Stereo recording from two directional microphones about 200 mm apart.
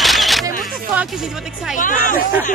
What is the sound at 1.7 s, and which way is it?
Speech, 40° left (ahead or behind).